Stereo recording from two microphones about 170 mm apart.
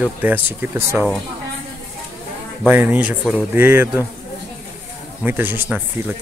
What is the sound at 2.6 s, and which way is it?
Speech, 10° right (ahead or behind).